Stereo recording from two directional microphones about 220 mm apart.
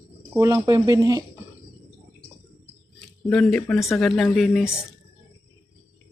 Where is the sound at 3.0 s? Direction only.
5° left (ahead or behind).